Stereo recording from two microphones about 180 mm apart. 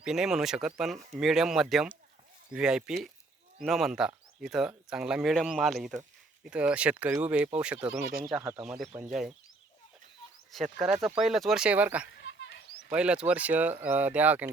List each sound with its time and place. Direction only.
0.0 s speech: 5° right (ahead or behind)
10.5 s speech: centre (ahead or behind)
12.0 s a sound: 90° left; by 12.9 s 70° left (ahead or behind)
12.9 s speech: 5° right (ahead or behind)